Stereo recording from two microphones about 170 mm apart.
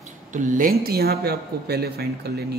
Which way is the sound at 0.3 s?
50° right (ahead or behind).